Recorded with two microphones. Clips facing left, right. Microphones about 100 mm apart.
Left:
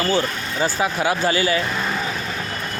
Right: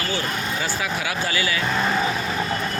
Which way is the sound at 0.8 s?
30° left (ahead or behind).